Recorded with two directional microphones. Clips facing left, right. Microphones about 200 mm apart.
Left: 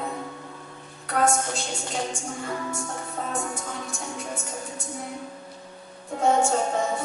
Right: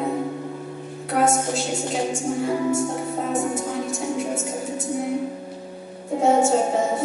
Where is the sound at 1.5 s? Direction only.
5° right (ahead or behind).